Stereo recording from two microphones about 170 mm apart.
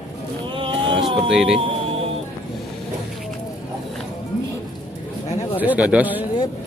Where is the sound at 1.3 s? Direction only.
Centre (ahead or behind).